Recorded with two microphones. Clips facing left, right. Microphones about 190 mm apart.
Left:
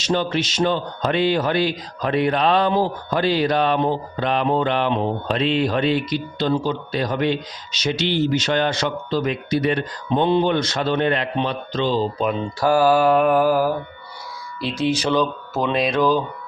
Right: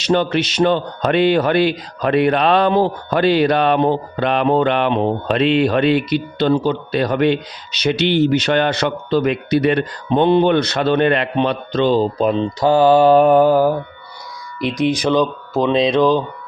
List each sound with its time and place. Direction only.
0.0 s speech: 65° right (ahead or behind); by 12.4 s 40° right (ahead or behind)
12.4 s speech: 25° right (ahead or behind)